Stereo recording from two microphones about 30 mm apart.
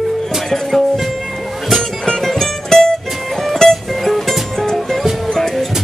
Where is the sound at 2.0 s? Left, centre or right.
Centre.